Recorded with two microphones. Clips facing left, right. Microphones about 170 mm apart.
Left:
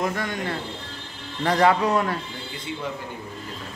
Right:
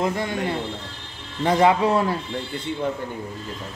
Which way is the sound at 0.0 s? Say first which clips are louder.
Right 3 dB; 25° right (ahead or behind).